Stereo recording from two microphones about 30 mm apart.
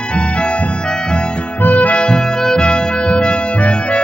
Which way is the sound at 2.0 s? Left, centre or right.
Left.